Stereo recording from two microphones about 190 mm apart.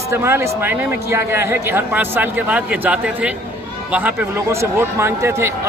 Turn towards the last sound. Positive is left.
turn(degrees=-15)  # may be behind; listen again after turning